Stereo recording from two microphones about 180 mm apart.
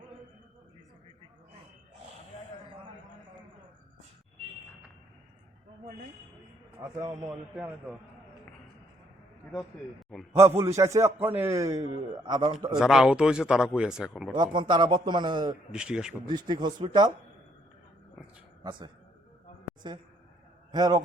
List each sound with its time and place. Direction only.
6.7 s a man's voice: 15° right (ahead or behind)
7.5 s a man's voice: 5° right (ahead or behind)
10.8 s a man's voice: 15° right (ahead or behind)
12.7 s a man's voice: 5° right (ahead or behind)
14.3 s a man's voice: 25° right (ahead or behind)
15.7 s a man's voice: 5° right (ahead or behind)
16.3 s a man's voice: 25° right (ahead or behind)
18.6 s a man's voice: 25° right (ahead or behind)
20.7 s a man's voice: 20° right (ahead or behind)